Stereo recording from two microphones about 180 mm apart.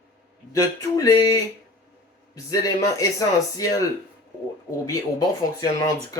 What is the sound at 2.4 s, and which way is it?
Speech, 20° left (ahead or behind).